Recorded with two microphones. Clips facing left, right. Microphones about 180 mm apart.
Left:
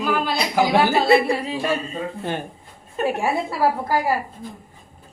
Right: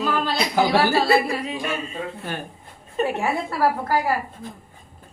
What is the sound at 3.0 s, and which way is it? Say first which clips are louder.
Speech: left 4 dB; 10° left (ahead or behind).